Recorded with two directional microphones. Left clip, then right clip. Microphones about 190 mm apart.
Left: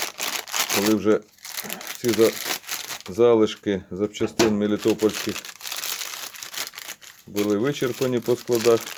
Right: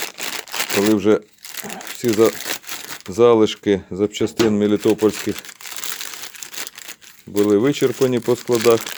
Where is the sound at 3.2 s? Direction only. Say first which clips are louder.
Right 4 dB; 40° right (ahead or behind).